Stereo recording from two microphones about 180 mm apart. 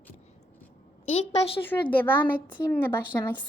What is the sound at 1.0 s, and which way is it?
Speech, 35° left (ahead or behind).